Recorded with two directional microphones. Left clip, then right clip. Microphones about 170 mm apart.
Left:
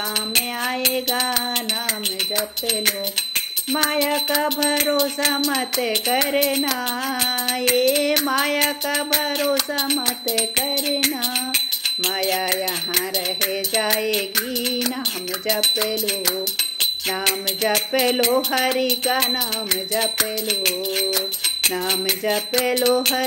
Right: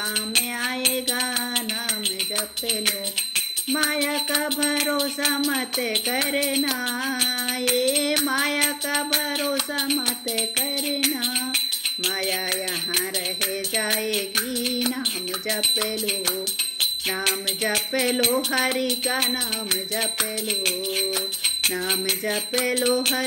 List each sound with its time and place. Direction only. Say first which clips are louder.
8.3 s music: left 3 dB; 15° right (ahead or behind)
11.5 s jingle bell: left 3 dB; 5° left (ahead or behind)
13.8 s music: left 3 dB; 5° left (ahead or behind)
16.8 s jingle bell: left 1 dB; 5° left (ahead or behind)
17.9 s music: left 5 dB; 15° right (ahead or behind)
19.1 s music: left 3 dB; 5° left (ahead or behind)